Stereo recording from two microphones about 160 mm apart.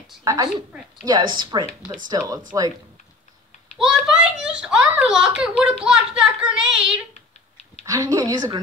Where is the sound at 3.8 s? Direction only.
Centre (ahead or behind).